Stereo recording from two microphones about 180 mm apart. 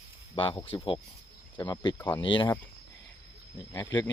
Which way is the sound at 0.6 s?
30° left (ahead or behind).